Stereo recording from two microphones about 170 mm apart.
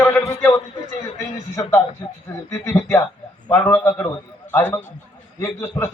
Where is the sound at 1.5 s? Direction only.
20° left (ahead or behind).